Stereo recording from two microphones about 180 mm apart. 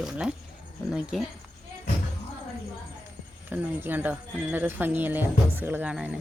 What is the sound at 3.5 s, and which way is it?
Speech, 10° right (ahead or behind).